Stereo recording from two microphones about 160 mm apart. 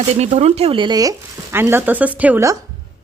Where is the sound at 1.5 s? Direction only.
15° right (ahead or behind).